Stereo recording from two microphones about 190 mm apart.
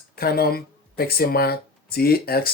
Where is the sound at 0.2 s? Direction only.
55° left (ahead or behind).